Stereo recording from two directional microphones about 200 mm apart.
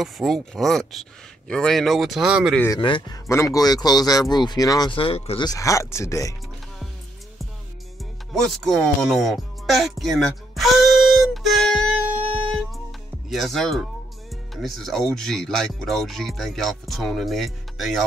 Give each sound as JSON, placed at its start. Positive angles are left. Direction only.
{"t": 0.0, "sound": "speech", "side_deg": 0}
{"t": 2.8, "sound": "speech", "side_deg": 25}
{"t": 8.3, "sound": "music", "side_deg": 0}
{"t": 13.3, "sound": "speech", "side_deg": 0}